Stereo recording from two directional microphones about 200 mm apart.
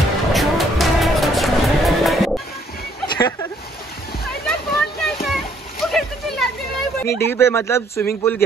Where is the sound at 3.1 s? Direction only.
20° left (ahead or behind).